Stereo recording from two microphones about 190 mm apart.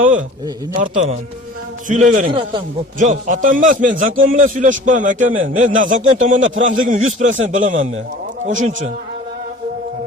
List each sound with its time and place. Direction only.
0.8 s a man's voice: 40° right (ahead or behind)